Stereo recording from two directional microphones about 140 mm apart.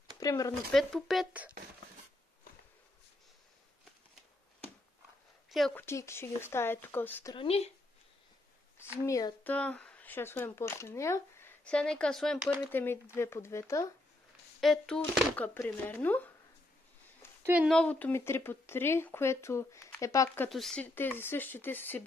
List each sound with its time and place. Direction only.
0.2 s speech: 25° left (ahead or behind)
0.7 s speech: centre (ahead or behind)
5.8 s speech: 20° left (ahead or behind)
7.3 s speech: 45° left (ahead or behind)
9.0 s speech: 20° left (ahead or behind)
9.5 s speech: 10° left (ahead or behind)
12.7 s speech: 15° left (ahead or behind)
14.6 s speech: centre (ahead or behind)
17.2 s a sound: 20° left (ahead or behind)
17.6 s speech: 10° left (ahead or behind)
20.4 s speech: centre (ahead or behind)
20.8 s speech: 15° left (ahead or behind)